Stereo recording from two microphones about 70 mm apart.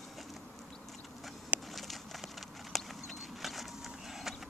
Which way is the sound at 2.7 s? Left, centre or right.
Centre.